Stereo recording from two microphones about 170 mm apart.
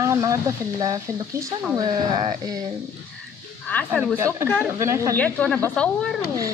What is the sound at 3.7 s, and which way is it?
Speech, 10° left (ahead or behind).